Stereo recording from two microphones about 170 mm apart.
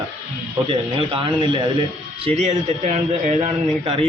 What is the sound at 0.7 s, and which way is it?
Speech, 35° right (ahead or behind).